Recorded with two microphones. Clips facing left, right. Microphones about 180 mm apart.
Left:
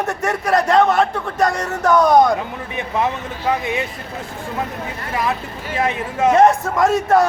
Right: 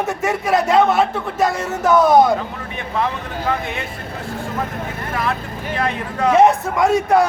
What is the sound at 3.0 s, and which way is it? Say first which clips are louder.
Speech: left 1 dB; 15° left (ahead or behind).